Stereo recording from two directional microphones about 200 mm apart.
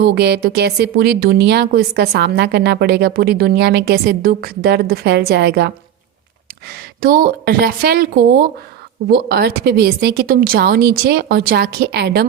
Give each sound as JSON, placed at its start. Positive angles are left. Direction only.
{"t": 0.0, "sound": "a woman's voice", "side_deg": -55}
{"t": 7.0, "sound": "a woman's voice", "side_deg": -50}